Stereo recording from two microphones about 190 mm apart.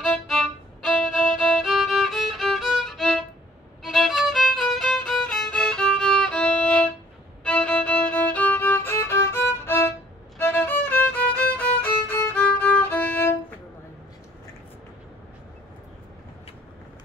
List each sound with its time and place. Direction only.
0.0 s violin: 5° left (ahead or behind)
7.4 s music: 5° left (ahead or behind)